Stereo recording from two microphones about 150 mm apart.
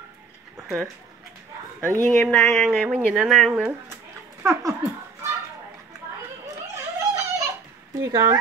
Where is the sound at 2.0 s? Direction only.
5° left (ahead or behind).